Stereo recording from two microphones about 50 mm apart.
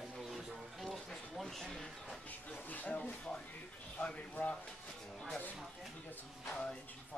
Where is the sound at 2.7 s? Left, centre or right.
Left.